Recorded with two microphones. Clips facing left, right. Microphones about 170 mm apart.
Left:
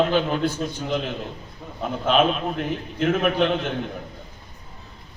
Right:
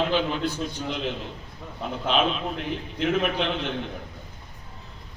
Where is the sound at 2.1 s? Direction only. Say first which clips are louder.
Left 4 dB; 45° left (ahead or behind).